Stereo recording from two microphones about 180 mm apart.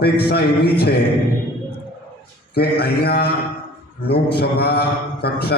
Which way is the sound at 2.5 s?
60° left (ahead or behind).